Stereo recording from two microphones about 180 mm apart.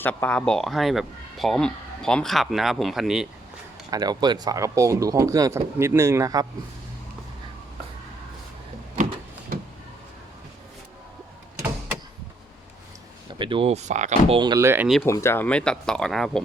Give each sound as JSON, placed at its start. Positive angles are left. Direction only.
{"t": 0.0, "sound": "speech", "side_deg": 10}
{"t": 3.9, "sound": "speech", "side_deg": -20}
{"t": 13.4, "sound": "speech", "side_deg": -30}
{"t": 14.3, "sound": "speech", "side_deg": -20}
{"t": 15.0, "sound": "speech", "side_deg": 15}